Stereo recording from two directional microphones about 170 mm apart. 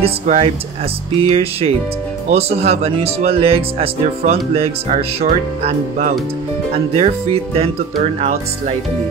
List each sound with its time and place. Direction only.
0.0 s speech: 35° right (ahead or behind)